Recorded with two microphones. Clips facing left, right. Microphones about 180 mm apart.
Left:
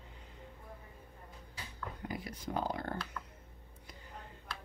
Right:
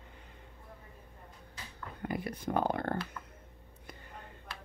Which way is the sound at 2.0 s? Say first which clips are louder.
Right 8 dB; 55° right (ahead or behind).